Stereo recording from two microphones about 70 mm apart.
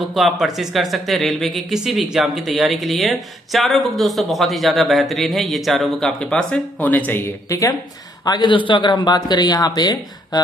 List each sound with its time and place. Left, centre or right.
0.0 s speech: centre; by 7.3 s left
7.4 s speech: left
8.3 s a man's voice: left